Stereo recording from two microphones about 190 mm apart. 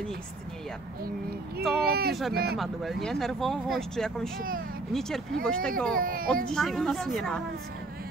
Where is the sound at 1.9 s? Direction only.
55° right (ahead or behind).